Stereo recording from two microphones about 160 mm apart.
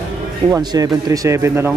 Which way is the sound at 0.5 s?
25° right (ahead or behind).